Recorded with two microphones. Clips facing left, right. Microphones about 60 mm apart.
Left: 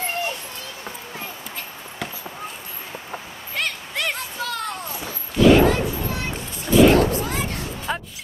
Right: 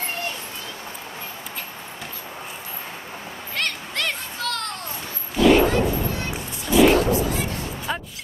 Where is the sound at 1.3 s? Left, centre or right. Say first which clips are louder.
Even; centre.